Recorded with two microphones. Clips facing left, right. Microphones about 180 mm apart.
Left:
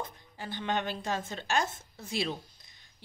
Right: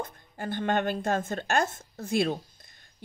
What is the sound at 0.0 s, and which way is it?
A woman's voice, 50° right (ahead or behind).